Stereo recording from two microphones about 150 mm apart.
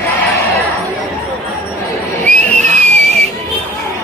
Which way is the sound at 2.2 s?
10° left (ahead or behind).